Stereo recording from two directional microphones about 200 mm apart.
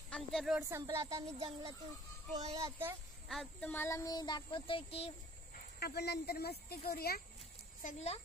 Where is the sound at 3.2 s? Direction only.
Centre (ahead or behind); by 5.1 s 25° left (ahead or behind).